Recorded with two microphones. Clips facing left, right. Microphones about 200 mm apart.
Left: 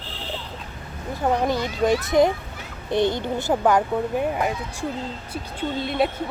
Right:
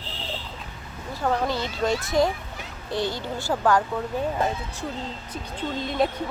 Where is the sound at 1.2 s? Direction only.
20° left (ahead or behind).